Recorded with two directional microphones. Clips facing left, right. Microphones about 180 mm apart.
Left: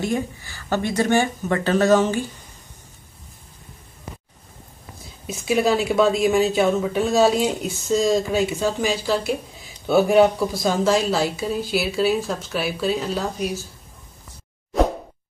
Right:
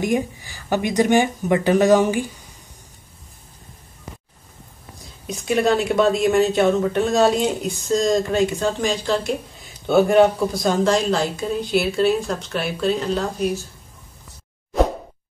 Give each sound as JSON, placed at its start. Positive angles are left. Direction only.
{"t": 0.0, "sound": "speech", "side_deg": -15}
{"t": 5.2, "sound": "speech", "side_deg": 0}